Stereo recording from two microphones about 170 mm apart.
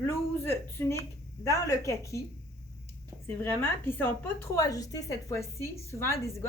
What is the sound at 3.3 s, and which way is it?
A woman's voice, 15° left (ahead or behind).